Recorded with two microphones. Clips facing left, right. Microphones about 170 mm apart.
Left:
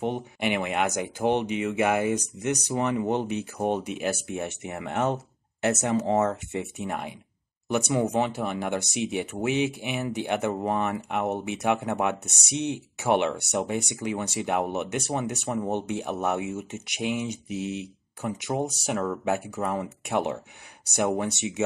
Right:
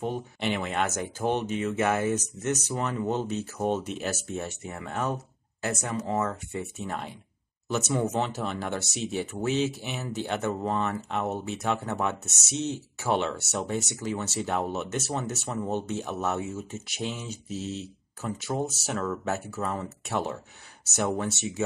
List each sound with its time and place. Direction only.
0.0 s speech: 15° left (ahead or behind)